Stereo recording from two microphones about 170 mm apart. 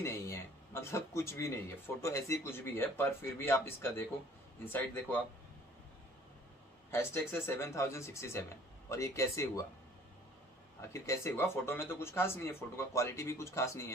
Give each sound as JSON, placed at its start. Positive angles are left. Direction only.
{"t": 0.0, "sound": "a man's voice", "side_deg": 15}
{"t": 6.9, "sound": "speech", "side_deg": 15}
{"t": 10.8, "sound": "speech", "side_deg": 15}